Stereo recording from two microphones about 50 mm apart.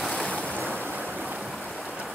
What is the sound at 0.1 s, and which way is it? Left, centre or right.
Waves, left.